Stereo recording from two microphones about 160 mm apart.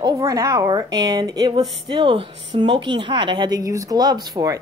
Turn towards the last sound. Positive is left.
turn(degrees=-25)  # may be behind; listen again after turning